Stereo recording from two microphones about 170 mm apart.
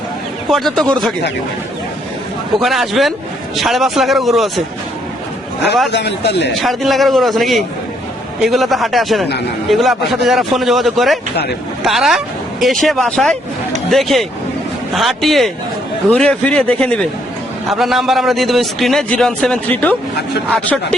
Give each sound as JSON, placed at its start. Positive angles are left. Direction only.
{"t": 0.5, "sound": "a man's voice", "side_deg": 0}
{"t": 2.6, "sound": "a man's voice", "side_deg": 0}
{"t": 5.9, "sound": "a man's voice", "side_deg": 85}
{"t": 6.5, "sound": "a man's voice", "side_deg": 0}